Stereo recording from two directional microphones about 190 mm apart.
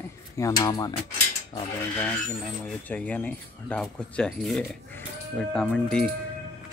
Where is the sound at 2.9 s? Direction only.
10° left (ahead or behind).